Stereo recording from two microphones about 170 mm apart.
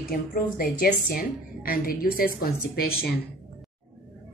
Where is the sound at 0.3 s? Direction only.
60° left (ahead or behind).